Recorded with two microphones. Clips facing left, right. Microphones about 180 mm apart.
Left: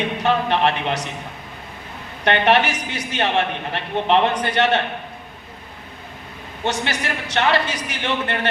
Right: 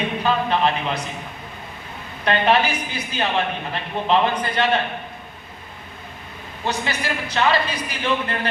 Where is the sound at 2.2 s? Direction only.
75° left (ahead or behind).